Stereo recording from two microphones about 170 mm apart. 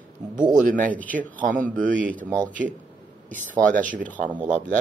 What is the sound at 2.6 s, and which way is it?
Speech, 20° right (ahead or behind).